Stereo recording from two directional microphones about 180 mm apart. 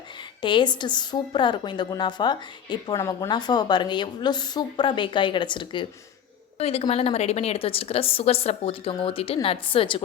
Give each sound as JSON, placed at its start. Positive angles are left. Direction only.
{"t": 0.2, "sound": "a woman's voice", "side_deg": 25}